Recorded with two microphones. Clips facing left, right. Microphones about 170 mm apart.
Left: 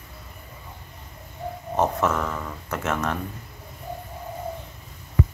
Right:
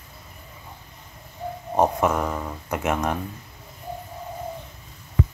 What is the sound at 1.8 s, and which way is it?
Speech, 15° right (ahead or behind).